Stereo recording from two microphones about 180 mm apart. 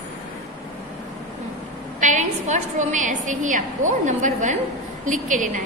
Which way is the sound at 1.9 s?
45° right (ahead or behind).